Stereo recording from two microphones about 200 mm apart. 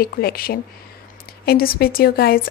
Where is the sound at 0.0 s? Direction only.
50° left (ahead or behind).